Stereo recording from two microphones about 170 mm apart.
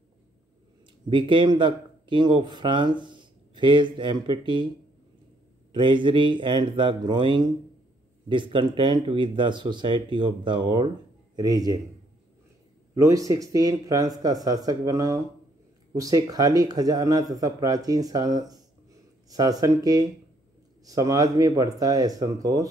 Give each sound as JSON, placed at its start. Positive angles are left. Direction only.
{"t": 1.0, "sound": "speech", "side_deg": -30}
{"t": 5.7, "sound": "speech", "side_deg": -30}
{"t": 12.9, "sound": "speech", "side_deg": -20}